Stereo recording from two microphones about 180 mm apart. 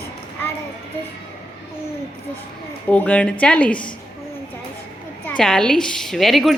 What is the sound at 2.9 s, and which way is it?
Speech, 10° left (ahead or behind).